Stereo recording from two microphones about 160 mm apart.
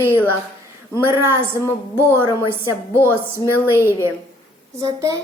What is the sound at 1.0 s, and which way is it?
Speech, 15° right (ahead or behind).